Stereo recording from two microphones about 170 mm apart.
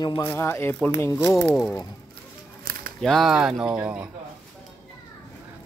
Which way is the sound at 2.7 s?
60° right (ahead or behind).